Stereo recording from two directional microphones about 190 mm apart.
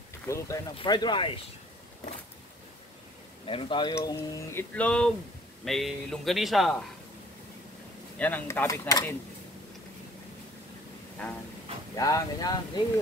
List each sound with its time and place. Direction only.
0.3 s speech: 15° left (ahead or behind)
3.4 s speech: 25° left (ahead or behind); by 6.8 s centre (ahead or behind)
8.2 s speech: 10° left (ahead or behind)
11.9 s speech: 20° left (ahead or behind)